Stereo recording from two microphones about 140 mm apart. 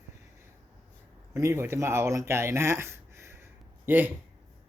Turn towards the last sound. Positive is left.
turn(degrees=-15)  # may be behind; listen again after turning